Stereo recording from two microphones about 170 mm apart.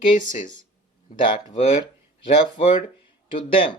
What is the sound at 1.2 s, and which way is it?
Speech, 30° left (ahead or behind).